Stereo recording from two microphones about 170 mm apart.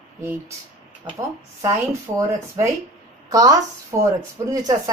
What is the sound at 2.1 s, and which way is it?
A woman's voice, 20° right (ahead or behind).